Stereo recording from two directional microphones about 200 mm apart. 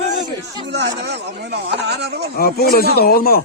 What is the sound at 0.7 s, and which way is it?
Speech, 60° right (ahead or behind).